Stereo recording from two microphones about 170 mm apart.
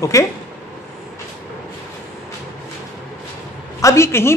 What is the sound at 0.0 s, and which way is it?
Speech, 20° left (ahead or behind).